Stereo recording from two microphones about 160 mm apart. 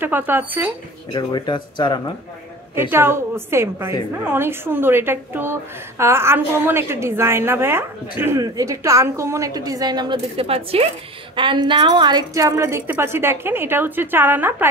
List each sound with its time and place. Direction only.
0.0 s a woman's voice: 10° right (ahead or behind)
1.1 s speech: 30° left (ahead or behind)
2.7 s a woman's voice: 15° right (ahead or behind)